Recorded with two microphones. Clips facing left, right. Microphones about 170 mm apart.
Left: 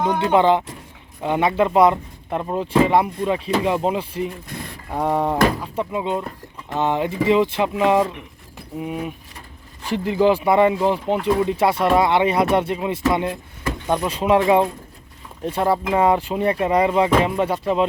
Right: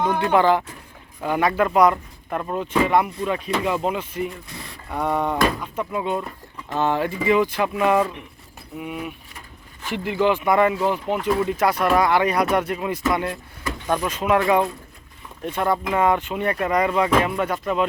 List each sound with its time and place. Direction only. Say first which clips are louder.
0.1 s speech: left 3 dB; 20° left (ahead or behind)
5.9 s speech: right 1 dB; 20° left (ahead or behind)
8.8 s speech: left 3 dB; 35° left (ahead or behind); by 14.1 s 15° left (ahead or behind)
14.1 s speech: left 3 dB; 30° left (ahead or behind)